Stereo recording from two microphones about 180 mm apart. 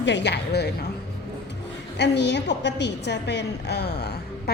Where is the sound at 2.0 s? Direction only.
75° left (ahead or behind).